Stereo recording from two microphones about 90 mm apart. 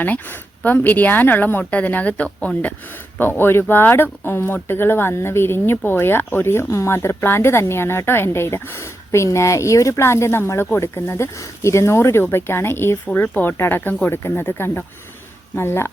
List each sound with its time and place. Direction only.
0.0 s speech: 20° left (ahead or behind)